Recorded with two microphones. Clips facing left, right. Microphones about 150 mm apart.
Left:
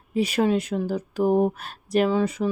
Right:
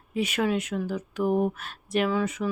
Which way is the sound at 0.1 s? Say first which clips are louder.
Left 4 dB; 35° left (ahead or behind).